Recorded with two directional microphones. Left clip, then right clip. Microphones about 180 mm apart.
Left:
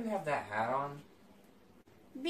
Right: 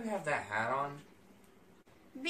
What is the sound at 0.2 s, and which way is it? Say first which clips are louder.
Female singing: even; 10° right (ahead or behind).